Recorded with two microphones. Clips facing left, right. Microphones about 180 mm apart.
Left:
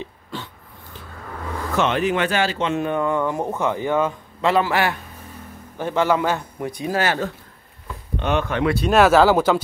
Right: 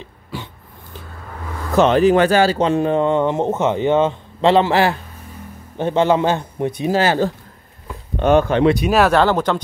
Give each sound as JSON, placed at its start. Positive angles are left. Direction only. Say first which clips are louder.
{"t": 0.3, "sound": "dog", "louder": "right 2 dB", "side_deg": -10}
{"t": 1.8, "sound": "speech", "louder": "right 8 dB", "side_deg": -35}
{"t": 8.2, "sound": "speech", "louder": "right 8 dB", "side_deg": -45}
{"t": 8.5, "sound": "speech", "louder": "right 6 dB", "side_deg": -30}
{"t": 8.9, "sound": "speech", "louder": "left 1 dB", "side_deg": 0}